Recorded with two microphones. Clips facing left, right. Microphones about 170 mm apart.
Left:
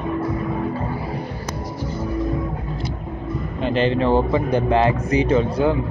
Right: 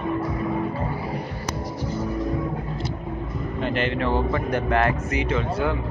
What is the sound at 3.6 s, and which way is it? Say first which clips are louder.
Speech: left 5 dB; 25° left (ahead or behind).